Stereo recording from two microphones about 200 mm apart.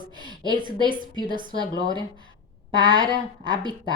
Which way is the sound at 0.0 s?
25° right (ahead or behind).